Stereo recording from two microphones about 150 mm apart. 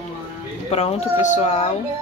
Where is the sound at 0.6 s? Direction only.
45° left (ahead or behind).